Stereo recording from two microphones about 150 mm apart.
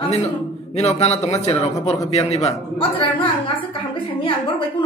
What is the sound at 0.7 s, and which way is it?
A man's voice, 45° left (ahead or behind).